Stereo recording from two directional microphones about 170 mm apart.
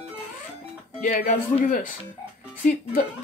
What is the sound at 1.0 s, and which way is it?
Speech, 55° left (ahead or behind).